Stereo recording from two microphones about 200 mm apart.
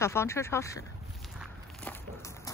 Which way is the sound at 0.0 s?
15° left (ahead or behind).